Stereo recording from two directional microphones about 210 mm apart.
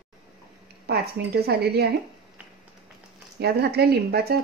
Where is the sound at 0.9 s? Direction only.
50° right (ahead or behind).